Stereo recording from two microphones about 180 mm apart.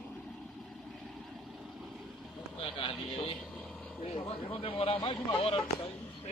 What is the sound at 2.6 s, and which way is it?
Speech, 30° left (ahead or behind).